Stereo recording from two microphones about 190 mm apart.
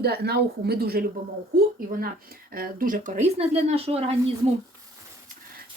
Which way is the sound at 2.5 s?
50° right (ahead or behind).